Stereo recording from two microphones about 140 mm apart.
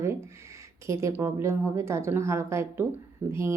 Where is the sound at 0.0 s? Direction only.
20° right (ahead or behind).